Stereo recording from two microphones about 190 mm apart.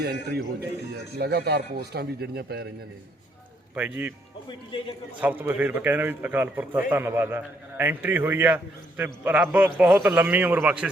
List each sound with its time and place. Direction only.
0.0 s a man's voice: 60° right (ahead or behind)
3.8 s a man's voice: 10° right (ahead or behind)
4.4 s speech: 25° left (ahead or behind)
5.2 s a man's voice: 10° right (ahead or behind)